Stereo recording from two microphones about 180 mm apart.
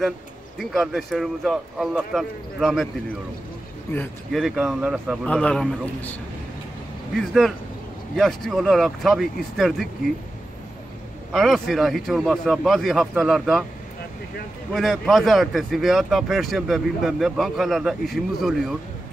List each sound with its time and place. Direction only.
0.6 s speech: centre (ahead or behind)
3.9 s a man's voice: 5° left (ahead or behind)
7.2 s speech: centre (ahead or behind)
11.3 s speech: centre (ahead or behind)
14.7 s speech: centre (ahead or behind)